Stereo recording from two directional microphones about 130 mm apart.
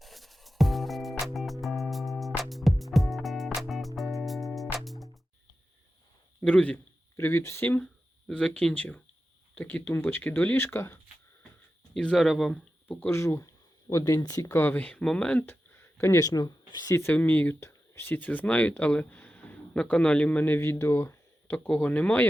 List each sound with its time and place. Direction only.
0.0 s music: centre (ahead or behind)
6.4 s a man's voice: 10° left (ahead or behind)
8.3 s speech: 5° left (ahead or behind)
11.9 s speech: 5° left (ahead or behind)